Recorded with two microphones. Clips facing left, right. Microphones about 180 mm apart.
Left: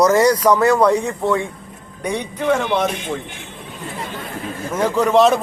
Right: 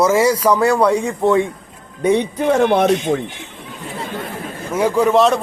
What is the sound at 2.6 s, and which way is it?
Speech, 55° right (ahead or behind).